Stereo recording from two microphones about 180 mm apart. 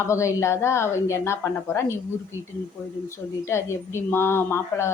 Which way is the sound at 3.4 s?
15° left (ahead or behind).